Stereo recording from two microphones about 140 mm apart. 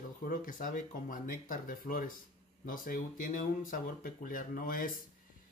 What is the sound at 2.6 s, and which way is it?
Speech, 80° left.